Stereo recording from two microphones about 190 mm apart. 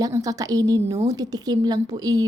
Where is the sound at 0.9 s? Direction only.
35° right (ahead or behind).